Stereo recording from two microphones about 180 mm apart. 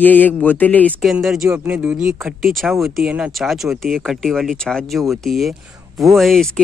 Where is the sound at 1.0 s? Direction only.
Centre (ahead or behind).